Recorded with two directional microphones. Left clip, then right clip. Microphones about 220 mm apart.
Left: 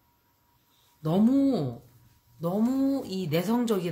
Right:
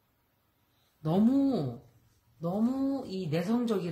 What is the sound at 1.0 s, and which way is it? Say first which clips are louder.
Speech: left 3 dB; 20° left (ahead or behind).